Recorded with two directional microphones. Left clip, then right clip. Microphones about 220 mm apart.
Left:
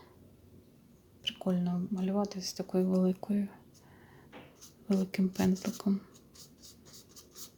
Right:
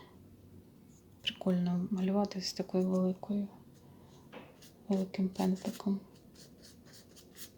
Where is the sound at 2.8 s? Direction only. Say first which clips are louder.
Left 3 dB; 15° left (ahead or behind).